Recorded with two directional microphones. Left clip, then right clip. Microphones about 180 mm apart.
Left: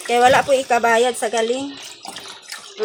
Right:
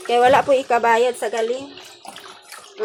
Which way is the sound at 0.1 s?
30° right (ahead or behind).